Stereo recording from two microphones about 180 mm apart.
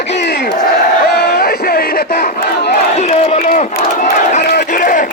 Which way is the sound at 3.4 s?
45° left (ahead or behind).